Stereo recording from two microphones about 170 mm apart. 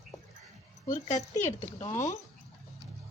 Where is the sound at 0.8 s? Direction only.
45° left (ahead or behind).